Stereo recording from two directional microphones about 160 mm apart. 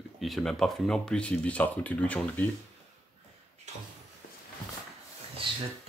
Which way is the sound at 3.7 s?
45° right (ahead or behind).